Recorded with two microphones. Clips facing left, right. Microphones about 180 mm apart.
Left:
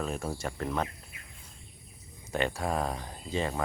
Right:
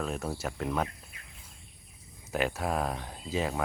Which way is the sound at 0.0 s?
Centre (ahead or behind).